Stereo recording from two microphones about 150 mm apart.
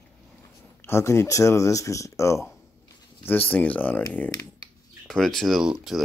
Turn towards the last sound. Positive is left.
turn(degrees=-5)  # may be behind; listen again after turning